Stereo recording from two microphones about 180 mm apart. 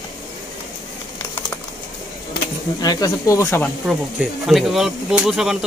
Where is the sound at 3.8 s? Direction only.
Centre (ahead or behind).